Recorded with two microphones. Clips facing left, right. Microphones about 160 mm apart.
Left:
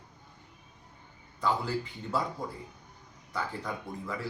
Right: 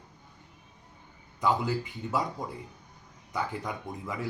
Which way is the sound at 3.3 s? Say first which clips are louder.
Right 2 dB; 15° right (ahead or behind).